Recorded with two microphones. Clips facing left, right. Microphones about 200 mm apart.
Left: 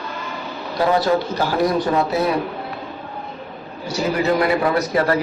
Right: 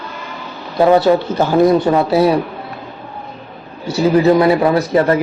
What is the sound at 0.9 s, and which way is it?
Speech, 25° right (ahead or behind).